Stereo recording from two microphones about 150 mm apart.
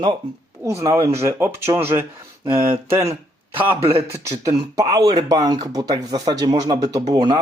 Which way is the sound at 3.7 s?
40° right (ahead or behind).